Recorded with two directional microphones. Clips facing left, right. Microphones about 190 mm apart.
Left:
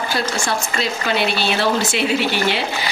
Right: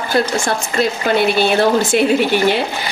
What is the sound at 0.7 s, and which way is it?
Speech, 50° right (ahead or behind).